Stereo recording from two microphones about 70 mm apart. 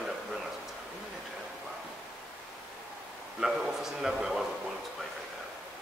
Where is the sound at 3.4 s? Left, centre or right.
Centre.